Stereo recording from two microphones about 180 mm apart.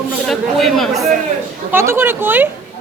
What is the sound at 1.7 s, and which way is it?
Speech, 15° right (ahead or behind).